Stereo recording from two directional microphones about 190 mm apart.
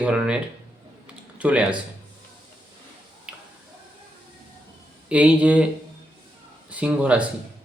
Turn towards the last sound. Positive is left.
turn(degrees=-5)  # may be behind; listen again after turning